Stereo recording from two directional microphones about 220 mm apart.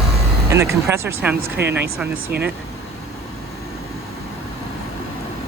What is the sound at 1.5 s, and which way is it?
Speech, 50° right (ahead or behind).